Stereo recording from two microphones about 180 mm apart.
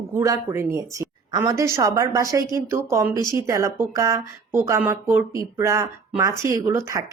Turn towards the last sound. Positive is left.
turn(degrees=-15)  # may be behind; listen again after turning